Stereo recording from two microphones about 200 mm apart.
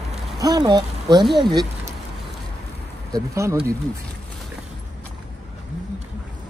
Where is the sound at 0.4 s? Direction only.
20° right (ahead or behind).